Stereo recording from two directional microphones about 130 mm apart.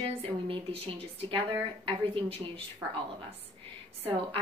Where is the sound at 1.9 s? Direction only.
40° right (ahead or behind).